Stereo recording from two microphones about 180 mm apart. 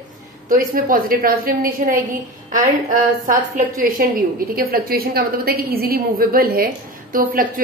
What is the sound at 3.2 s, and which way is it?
A woman's voice, 50° right (ahead or behind).